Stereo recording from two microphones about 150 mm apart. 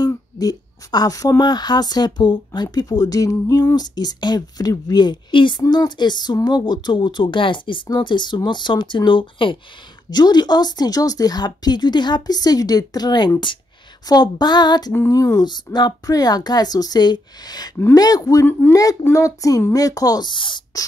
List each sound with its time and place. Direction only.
0.0 s speech: 25° left (ahead or behind)